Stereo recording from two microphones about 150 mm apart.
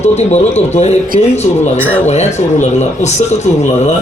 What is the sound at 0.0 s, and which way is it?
A man's voice, 50° left (ahead or behind).